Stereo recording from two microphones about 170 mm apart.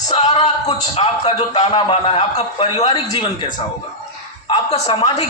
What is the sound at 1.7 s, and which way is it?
A man's voice, 30° left (ahead or behind).